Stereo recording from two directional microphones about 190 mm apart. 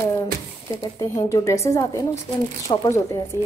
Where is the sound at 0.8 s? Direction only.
15° left (ahead or behind).